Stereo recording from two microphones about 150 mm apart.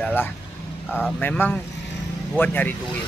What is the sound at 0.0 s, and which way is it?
Speech, 15° left (ahead or behind).